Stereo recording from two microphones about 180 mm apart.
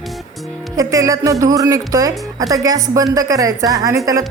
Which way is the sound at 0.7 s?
20° right (ahead or behind).